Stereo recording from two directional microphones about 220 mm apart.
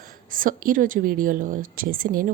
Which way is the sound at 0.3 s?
40° right (ahead or behind).